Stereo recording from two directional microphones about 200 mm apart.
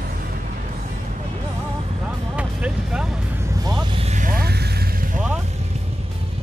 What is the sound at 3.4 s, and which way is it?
Vehicle, 20° right (ahead or behind).